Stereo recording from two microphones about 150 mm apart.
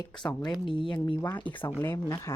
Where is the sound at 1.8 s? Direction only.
15° left (ahead or behind).